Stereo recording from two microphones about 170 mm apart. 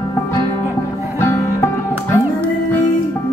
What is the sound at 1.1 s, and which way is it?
Music, 15° left (ahead or behind).